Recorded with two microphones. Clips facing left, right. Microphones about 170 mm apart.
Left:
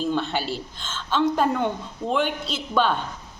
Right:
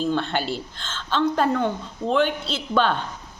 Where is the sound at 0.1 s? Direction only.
10° left (ahead or behind).